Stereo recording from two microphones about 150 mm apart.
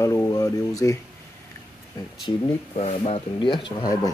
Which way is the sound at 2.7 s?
40° left (ahead or behind).